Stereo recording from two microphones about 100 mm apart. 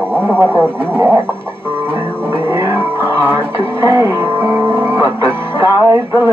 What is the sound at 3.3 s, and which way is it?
Music, 25° right (ahead or behind).